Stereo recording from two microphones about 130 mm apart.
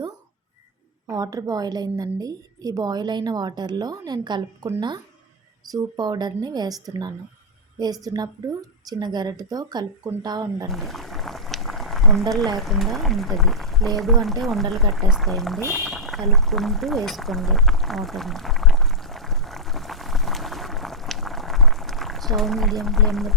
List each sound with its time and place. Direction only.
1.0 s a woman's voice: 30° right (ahead or behind)
10.7 s pour: centre (ahead or behind)
12.5 s speech: centre (ahead or behind)
15.7 s a sound: centre (ahead or behind)